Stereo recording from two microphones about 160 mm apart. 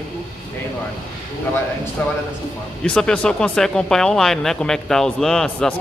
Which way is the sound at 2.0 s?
10° left (ahead or behind).